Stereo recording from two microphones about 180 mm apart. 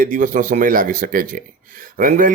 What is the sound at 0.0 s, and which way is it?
Speech, 45° right (ahead or behind).